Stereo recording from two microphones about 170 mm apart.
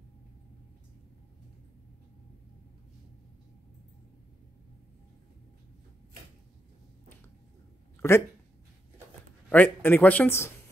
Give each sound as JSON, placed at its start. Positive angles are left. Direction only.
{"t": 8.0, "sound": "speech", "side_deg": 15}
{"t": 9.5, "sound": "speech", "side_deg": 10}